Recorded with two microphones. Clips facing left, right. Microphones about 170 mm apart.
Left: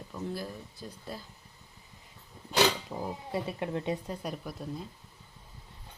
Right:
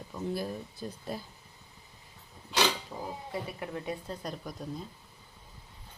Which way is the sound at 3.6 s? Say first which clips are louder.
Left 4 dB; 25° left (ahead or behind).